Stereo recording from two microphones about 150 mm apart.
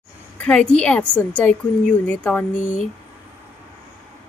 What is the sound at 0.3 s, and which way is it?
Speech, 10° left (ahead or behind).